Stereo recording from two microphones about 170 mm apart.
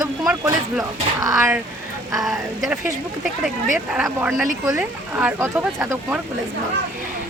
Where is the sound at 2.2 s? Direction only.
Centre (ahead or behind).